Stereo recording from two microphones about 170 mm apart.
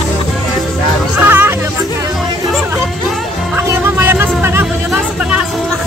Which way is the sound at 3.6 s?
10° right (ahead or behind).